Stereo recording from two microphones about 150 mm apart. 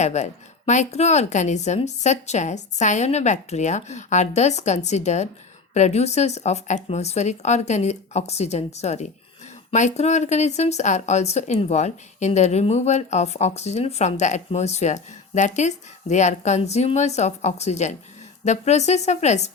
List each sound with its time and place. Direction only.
0.0 s speech: 50° left (ahead or behind)